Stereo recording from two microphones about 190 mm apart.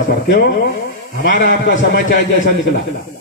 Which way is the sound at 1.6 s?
60° left (ahead or behind).